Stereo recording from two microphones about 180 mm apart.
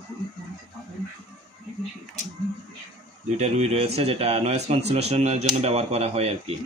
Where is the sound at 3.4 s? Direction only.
35° right (ahead or behind).